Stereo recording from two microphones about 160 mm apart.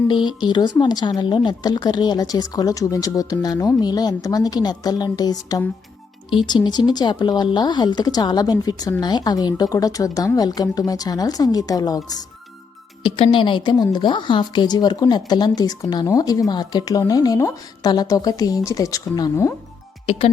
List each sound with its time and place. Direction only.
0.1 s a woman's voice: 30° left (ahead or behind)
20.1 s speech: 40° left (ahead or behind)